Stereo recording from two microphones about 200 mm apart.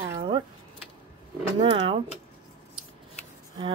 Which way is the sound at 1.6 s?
25° right (ahead or behind).